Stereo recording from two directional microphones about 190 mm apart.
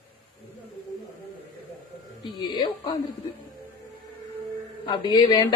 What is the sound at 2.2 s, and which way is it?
Speech, 25° left (ahead or behind).